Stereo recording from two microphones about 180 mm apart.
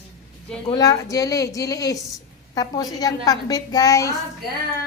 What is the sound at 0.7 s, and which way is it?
A woman's voice, 20° left (ahead or behind).